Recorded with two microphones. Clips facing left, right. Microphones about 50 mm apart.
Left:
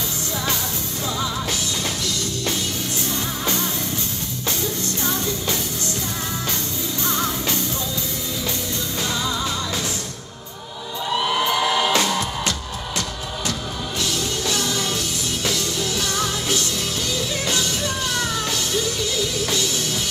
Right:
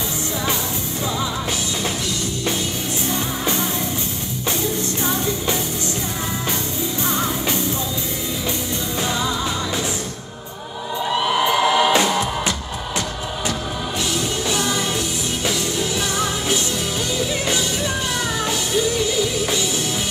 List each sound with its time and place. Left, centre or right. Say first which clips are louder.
3.1 s music: right 3 dB; right
5.0 s music: right 2 dB; right
7.1 s music: even; right
11.2 s music: right 3 dB; centre
14.1 s music: right 3 dB; right
19.1 s music: right 3 dB; centre